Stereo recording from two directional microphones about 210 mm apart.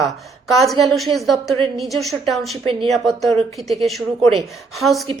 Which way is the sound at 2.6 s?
25° right (ahead or behind).